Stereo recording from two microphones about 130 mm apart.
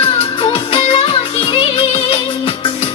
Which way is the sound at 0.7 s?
40° left (ahead or behind).